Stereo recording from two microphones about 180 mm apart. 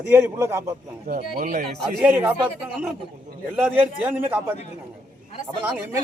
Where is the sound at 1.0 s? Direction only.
50° right (ahead or behind).